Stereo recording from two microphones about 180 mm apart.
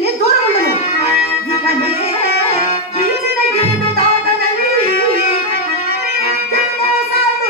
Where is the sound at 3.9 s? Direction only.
60° right (ahead or behind).